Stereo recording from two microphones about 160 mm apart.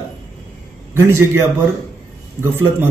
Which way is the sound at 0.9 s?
15° right (ahead or behind).